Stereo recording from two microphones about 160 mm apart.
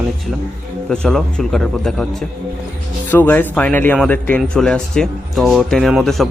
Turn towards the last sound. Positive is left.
turn(degrees=0)  # may be behind; listen again after turning